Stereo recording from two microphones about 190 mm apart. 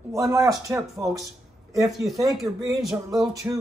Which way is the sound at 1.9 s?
Centre (ahead or behind).